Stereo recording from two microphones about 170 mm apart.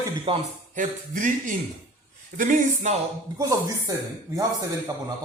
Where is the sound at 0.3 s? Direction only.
30° right (ahead or behind).